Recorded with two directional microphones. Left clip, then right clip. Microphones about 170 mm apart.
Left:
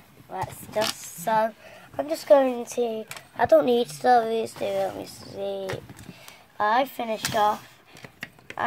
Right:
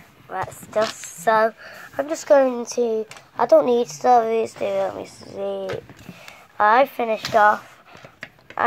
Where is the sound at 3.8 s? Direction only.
20° left (ahead or behind).